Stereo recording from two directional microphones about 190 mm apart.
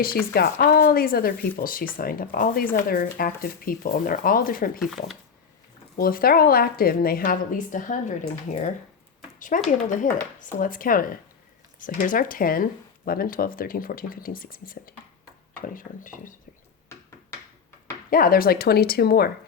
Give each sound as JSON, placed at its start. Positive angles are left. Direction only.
{"t": 0.3, "sound": "a woman's voice", "side_deg": 55}
{"t": 4.8, "sound": "speech", "side_deg": 0}
{"t": 6.0, "sound": "a woman's voice", "side_deg": 50}
{"t": 18.1, "sound": "a woman's voice", "side_deg": 50}